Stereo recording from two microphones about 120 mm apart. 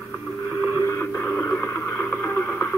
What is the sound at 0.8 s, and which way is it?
Radio, 25° left (ahead or behind).